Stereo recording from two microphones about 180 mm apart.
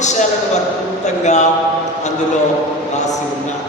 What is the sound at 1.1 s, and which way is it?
Speech, 40° left (ahead or behind).